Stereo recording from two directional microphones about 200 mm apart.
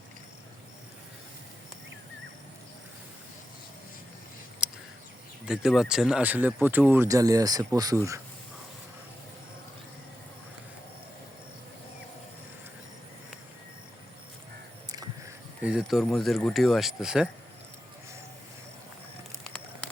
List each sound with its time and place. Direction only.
4.6 s a sound: 5° right (ahead or behind)
5.5 s speech: centre (ahead or behind)
15.6 s speech: 5° right (ahead or behind)